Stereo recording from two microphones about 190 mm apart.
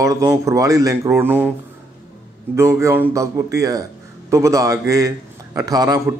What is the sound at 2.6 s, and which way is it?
A man's voice, 15° right (ahead or behind).